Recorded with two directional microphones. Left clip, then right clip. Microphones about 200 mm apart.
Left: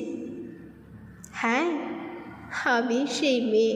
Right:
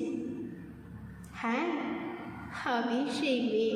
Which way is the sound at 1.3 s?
35° left (ahead or behind).